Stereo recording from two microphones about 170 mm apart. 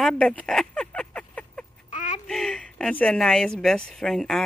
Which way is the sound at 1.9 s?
45° left (ahead or behind).